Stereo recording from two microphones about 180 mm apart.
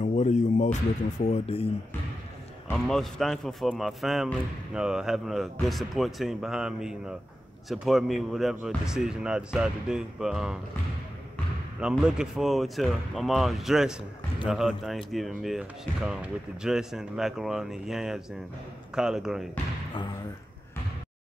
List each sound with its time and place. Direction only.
0.0 s music: 40° left (ahead or behind)
1.2 s speech: 35° left (ahead or behind)
2.7 s speech: centre (ahead or behind)
12.0 s speech: 5° right (ahead or behind)